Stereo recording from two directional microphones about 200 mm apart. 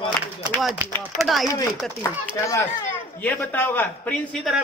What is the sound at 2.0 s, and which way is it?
A man's voice, 15° left (ahead or behind).